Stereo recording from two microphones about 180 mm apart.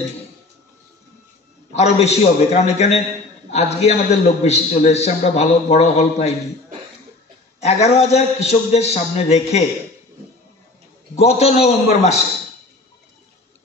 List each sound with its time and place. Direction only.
1.7 s a man's voice: 35° left (ahead or behind)
7.6 s a man's voice: 35° left (ahead or behind)
11.1 s a man's voice: 35° left (ahead or behind)